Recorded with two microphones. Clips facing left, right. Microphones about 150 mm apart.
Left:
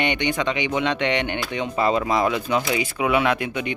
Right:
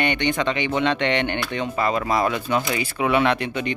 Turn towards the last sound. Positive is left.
turn(degrees=10)  # may be behind; listen again after turning